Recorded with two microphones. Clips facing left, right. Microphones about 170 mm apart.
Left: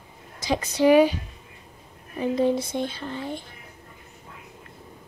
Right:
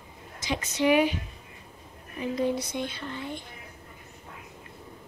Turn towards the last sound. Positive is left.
turn(degrees=35)  # may be behind; listen again after turning